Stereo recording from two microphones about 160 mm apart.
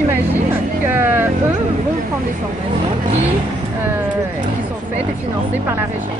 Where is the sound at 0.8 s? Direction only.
15° right (ahead or behind).